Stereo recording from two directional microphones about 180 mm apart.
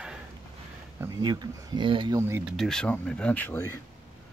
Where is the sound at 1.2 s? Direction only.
25° right (ahead or behind).